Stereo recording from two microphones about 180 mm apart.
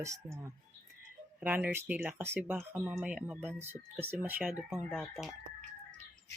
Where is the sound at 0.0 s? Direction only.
15° right (ahead or behind); by 5.3 s centre (ahead or behind).